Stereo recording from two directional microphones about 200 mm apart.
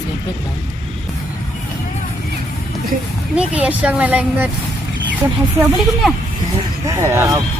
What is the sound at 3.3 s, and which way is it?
Speech, 5° right (ahead or behind).